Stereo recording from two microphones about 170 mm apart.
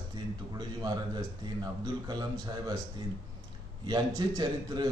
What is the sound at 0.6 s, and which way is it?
A man's voice, 25° right (ahead or behind).